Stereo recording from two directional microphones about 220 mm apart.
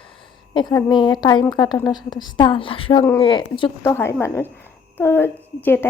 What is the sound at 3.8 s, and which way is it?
Speech, 10° left (ahead or behind).